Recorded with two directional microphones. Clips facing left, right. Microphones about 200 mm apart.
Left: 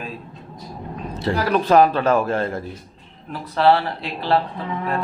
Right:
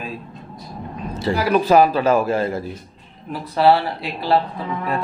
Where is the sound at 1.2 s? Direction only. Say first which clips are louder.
Right 2 dB; 5° right (ahead or behind).